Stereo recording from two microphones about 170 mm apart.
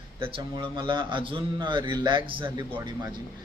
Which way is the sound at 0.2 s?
30° right (ahead or behind).